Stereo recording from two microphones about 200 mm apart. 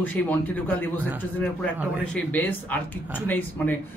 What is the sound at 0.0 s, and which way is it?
Speech, 10° left (ahead or behind).